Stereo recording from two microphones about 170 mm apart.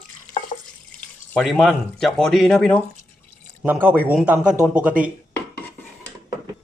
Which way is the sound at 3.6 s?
10° right (ahead or behind).